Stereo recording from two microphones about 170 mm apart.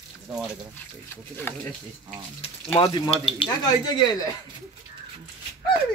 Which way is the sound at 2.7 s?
30° left (ahead or behind).